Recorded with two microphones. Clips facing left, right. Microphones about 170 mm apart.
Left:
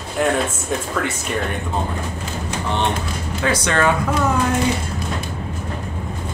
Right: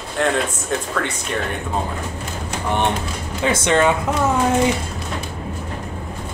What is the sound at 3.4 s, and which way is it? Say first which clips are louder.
Speech: right 2 dB; 20° right (ahead or behind).